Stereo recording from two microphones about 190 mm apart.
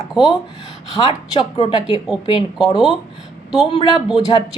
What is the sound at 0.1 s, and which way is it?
Speech, centre (ahead or behind).